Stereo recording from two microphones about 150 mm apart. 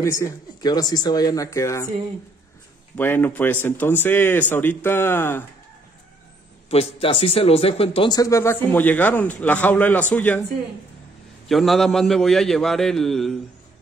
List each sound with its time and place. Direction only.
0.0 s speech: 20° left (ahead or behind)
3.0 s a man's voice: 15° left (ahead or behind)
6.7 s speech: 40° left (ahead or behind)
8.1 s a man's voice: 20° left (ahead or behind)
11.4 s a man's voice: centre (ahead or behind)